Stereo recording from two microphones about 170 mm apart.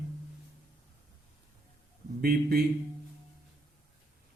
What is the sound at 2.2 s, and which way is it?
Speech, 65° right (ahead or behind).